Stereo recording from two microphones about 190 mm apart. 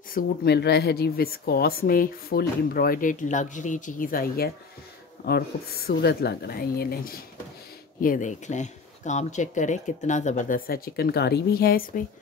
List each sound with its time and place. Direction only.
0.1 s speech: 60° left (ahead or behind)